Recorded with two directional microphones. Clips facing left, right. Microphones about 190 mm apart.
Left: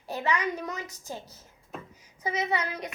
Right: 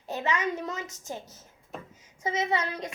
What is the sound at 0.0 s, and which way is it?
A child's voice, 20° right (ahead or behind).